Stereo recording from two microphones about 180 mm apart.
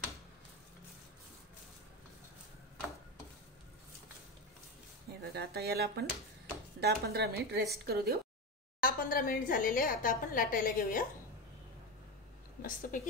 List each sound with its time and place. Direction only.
5.3 s a woman's voice: 65° right (ahead or behind)
8.8 s a woman's voice: 50° left (ahead or behind)
12.6 s a woman's voice: 45° left (ahead or behind)